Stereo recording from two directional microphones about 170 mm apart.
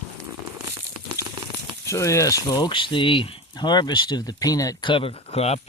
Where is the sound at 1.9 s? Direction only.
15° left (ahead or behind).